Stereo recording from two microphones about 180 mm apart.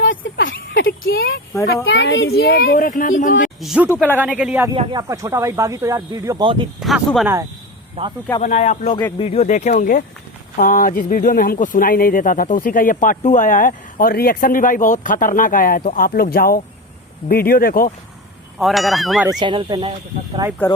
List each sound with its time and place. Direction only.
0.0 s a sound: 90° left
0.5 s a sound: 55° left (ahead or behind)
1.9 s speech: 80° left; by 3.5 s 45° left (ahead or behind)
3.6 s speech: centre (ahead or behind)
4.7 s speech: 25° right (ahead or behind)
6.7 s speech: centre (ahead or behind)
8.0 s speech: 35° right (ahead or behind)
8.4 s speech: 40° left (ahead or behind)
18.6 s speech: centre (ahead or behind)
19.3 s speech: 25° right (ahead or behind)
20.6 s speech: 10° left (ahead or behind)